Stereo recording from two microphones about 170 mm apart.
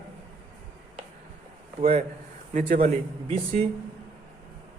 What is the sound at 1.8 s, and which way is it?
Speech, 35° right (ahead or behind).